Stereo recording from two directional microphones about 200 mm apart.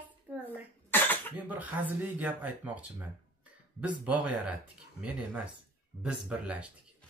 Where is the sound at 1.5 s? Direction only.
10° right (ahead or behind).